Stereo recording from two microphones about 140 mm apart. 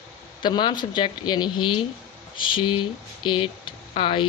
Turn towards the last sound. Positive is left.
turn(degrees=35)  # may be behind; listen again after turning